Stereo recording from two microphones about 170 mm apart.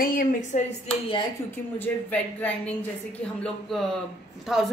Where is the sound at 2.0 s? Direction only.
10° left (ahead or behind).